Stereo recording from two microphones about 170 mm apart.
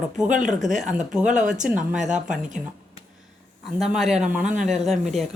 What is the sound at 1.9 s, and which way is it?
Speech, 45° right (ahead or behind).